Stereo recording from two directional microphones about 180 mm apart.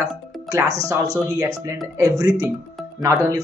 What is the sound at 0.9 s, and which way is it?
Speech, 20° right (ahead or behind).